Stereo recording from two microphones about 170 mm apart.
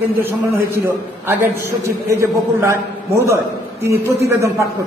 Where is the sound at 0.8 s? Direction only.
15° right (ahead or behind).